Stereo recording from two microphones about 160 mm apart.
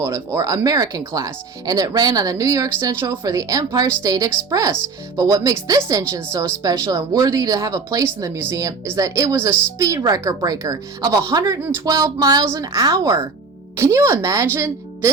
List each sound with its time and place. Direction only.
0.0 s a woman's voice: 20° right (ahead or behind)